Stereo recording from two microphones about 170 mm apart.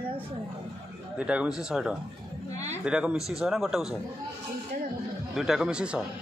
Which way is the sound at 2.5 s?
40° right (ahead or behind).